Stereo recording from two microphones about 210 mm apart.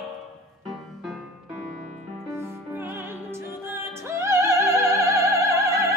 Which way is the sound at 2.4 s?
10° right (ahead or behind).